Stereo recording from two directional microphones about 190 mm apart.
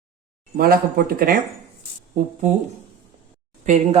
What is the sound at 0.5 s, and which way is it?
Speech, 50° right (ahead or behind).